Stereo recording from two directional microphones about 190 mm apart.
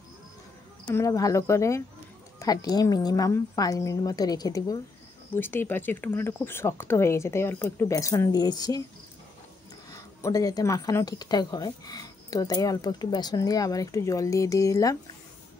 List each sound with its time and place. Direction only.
0.8 s speech: 15° left (ahead or behind)
9.8 s speech: 15° left (ahead or behind)